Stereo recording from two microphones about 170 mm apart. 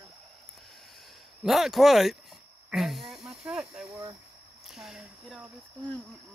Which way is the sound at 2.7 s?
Centre (ahead or behind).